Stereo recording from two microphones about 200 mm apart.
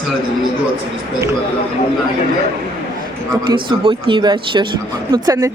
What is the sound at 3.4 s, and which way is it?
A woman's voice, 25° right (ahead or behind).